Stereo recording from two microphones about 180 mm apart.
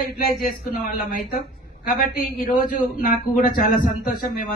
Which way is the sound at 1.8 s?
50° left (ahead or behind).